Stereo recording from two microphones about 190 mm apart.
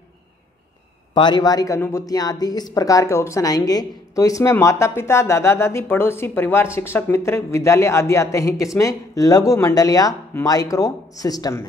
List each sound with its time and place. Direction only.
1.1 s speech: 25° left (ahead or behind)